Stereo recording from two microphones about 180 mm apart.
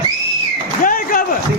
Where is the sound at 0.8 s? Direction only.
50° left (ahead or behind).